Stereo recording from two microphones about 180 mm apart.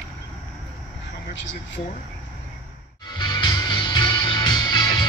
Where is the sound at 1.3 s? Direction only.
85° left.